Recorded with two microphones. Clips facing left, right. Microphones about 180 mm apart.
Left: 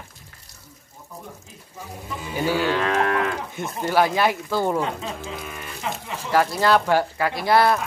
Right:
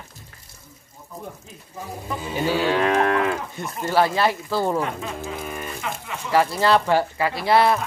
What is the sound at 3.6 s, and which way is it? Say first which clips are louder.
Speech: left 1 dB; centre (ahead or behind).